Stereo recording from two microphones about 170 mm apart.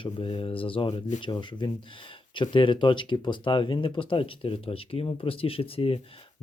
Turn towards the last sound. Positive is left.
turn(degrees=30)  # may be behind; listen again after turning